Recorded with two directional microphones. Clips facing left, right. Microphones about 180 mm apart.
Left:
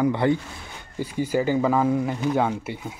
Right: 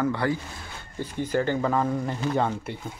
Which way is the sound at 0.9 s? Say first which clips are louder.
Left 2 dB; 10° left (ahead or behind).